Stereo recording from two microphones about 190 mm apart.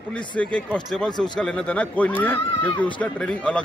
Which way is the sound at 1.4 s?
5° left (ahead or behind).